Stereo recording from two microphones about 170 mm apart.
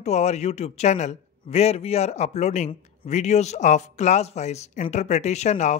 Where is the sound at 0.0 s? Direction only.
40° left (ahead or behind).